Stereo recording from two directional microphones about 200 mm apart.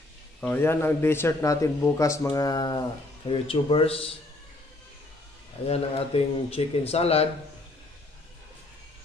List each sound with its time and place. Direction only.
0.4 s speech: 10° left (ahead or behind); by 4.1 s 30° left (ahead or behind)
5.7 s speech: 30° left (ahead or behind)